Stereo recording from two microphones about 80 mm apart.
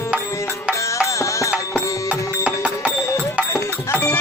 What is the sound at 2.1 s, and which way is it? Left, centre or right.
Music, centre.